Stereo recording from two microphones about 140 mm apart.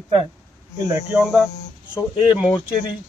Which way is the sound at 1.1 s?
Centre (ahead or behind).